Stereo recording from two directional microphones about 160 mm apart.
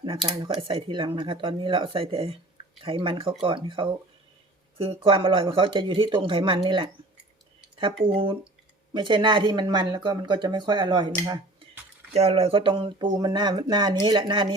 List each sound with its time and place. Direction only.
0.0 s speech: 30° right (ahead or behind)
5.0 s speech: 30° right (ahead or behind)
12.1 s speech: 40° right (ahead or behind)